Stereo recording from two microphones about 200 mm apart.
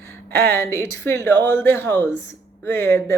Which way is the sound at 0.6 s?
15° left (ahead or behind).